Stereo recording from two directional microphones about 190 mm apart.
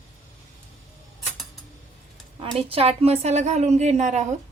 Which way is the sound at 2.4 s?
30° right (ahead or behind).